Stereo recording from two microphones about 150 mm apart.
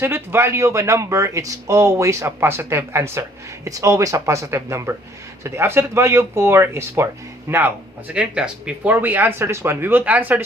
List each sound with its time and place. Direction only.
0.0 s speech: 15° right (ahead or behind)